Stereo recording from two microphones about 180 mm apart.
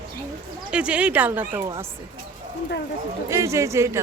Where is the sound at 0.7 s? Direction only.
5° right (ahead or behind).